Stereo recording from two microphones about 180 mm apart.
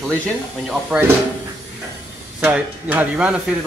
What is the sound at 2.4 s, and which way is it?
Speech, 10° right (ahead or behind).